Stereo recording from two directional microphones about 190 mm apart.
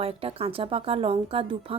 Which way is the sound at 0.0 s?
30° right (ahead or behind).